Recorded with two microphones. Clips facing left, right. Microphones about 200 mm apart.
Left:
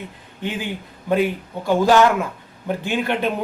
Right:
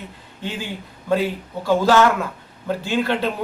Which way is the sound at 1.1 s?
15° left (ahead or behind).